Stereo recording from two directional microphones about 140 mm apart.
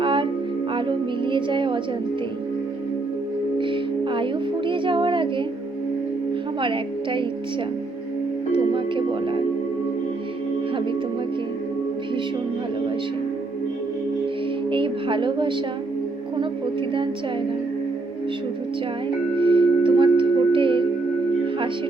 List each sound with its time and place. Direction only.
0.0 s music: 35° right (ahead or behind)
3.6 s music: 35° right (ahead or behind)
6.6 s a woman's voice: 35° right (ahead or behind)
8.5 s music: 35° right (ahead or behind)
14.7 s a woman's voice: 35° right (ahead or behind)
19.4 s singing bowl: 35° right (ahead or behind)